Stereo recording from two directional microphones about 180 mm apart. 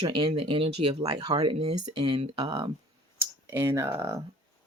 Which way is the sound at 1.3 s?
35° right (ahead or behind).